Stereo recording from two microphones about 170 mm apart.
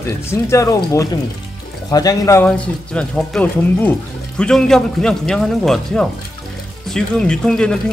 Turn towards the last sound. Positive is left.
turn(degrees=5)  # may be behind; listen again after turning